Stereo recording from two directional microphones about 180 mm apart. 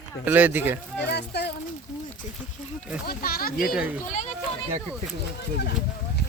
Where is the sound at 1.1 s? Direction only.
65° left (ahead or behind).